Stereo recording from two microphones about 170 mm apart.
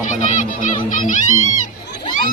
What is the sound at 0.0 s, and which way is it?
Music, 50° left (ahead or behind).